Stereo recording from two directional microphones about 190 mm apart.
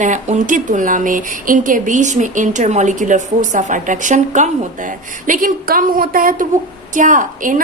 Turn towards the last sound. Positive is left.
turn(degrees=-45)  # may be behind; listen again after turning